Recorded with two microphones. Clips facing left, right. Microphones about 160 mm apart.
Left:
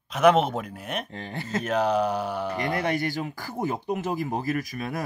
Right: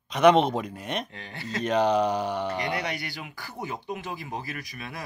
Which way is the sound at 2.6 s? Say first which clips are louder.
Left 4 dB; 50° left (ahead or behind).